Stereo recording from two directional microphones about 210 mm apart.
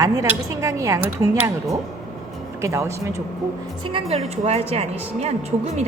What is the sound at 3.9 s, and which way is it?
Speech, 25° right (ahead or behind).